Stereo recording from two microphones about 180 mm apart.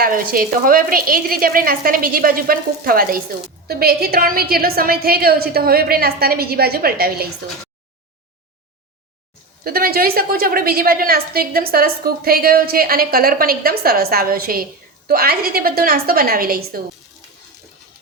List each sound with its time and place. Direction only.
0.0 s a woman's voice: 55° right (ahead or behind)
9.6 s a woman's voice: 55° right (ahead or behind)